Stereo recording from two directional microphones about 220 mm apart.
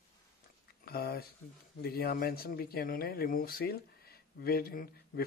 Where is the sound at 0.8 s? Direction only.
45° left (ahead or behind).